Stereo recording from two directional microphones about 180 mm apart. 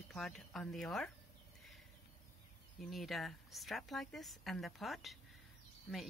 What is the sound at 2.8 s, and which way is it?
Speech, centre (ahead or behind).